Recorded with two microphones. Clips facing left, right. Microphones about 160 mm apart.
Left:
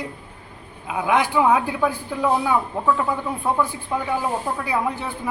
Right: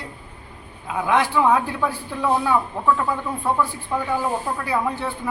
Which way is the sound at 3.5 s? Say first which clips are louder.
Even; 15° left (ahead or behind).